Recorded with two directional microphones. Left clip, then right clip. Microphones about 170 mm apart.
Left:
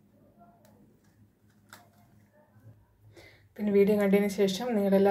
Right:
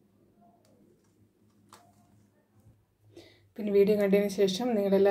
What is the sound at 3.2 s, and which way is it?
Speech, 45° right (ahead or behind).